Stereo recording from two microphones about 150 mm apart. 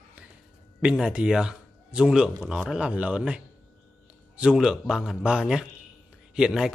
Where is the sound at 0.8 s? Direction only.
5° right (ahead or behind).